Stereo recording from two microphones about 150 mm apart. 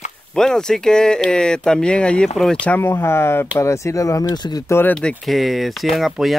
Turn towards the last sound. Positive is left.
turn(degrees=0)  # may be behind; listen again after turning